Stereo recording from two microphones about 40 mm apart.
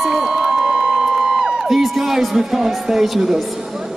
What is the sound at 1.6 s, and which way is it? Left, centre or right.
Speech, centre.